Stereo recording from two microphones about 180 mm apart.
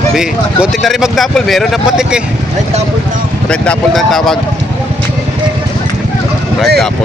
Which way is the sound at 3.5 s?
5° left (ahead or behind).